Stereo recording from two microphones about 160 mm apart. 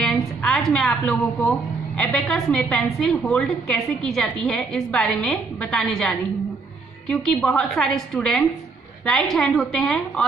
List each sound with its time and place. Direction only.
0.0 s a woman's voice: 5° left (ahead or behind)